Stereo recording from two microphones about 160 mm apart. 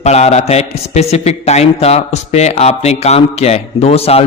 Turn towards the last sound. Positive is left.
turn(degrees=40)  # may be behind; listen again after turning